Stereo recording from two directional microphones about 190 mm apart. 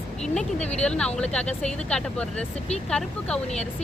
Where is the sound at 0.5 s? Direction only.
35° left (ahead or behind).